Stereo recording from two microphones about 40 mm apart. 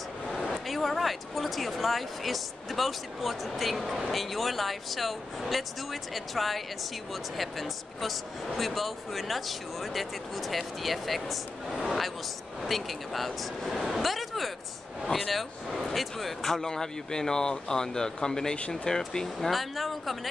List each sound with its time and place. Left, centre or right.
0.7 s speech: centre
13.9 s a sound: centre
15.0 s speech: centre
16.6 s speech: centre
19.5 s speech: centre